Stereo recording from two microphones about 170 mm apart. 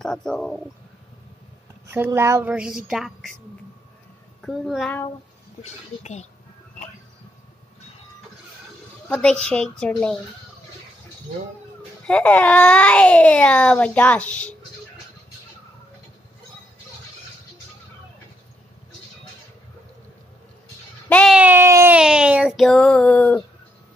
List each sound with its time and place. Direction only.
0.0 s child singing: 5° left (ahead or behind)
1.9 s speech: 15° right (ahead or behind)
2.9 s child singing: centre (ahead or behind)
4.4 s a child's voice: centre (ahead or behind)
5.6 s speech: 40° left (ahead or behind)
9.1 s child singing: 5° left (ahead or behind)
12.1 s a child's voice: 10° left (ahead or behind)
21.1 s a sound: 5° left (ahead or behind)
21.4 s speech: 10° right (ahead or behind)
21.9 s child singing: 5° right (ahead or behind)